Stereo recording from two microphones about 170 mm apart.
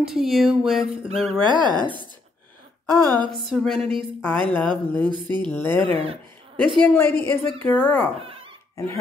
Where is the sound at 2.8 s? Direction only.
20° right (ahead or behind).